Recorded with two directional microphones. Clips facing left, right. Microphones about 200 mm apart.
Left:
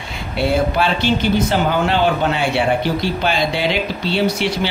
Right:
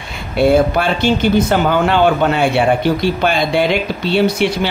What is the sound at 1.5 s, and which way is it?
A man's voice, 50° right (ahead or behind).